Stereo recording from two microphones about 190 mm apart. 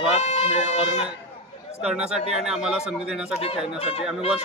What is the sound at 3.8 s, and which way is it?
Speech, 30° left (ahead or behind).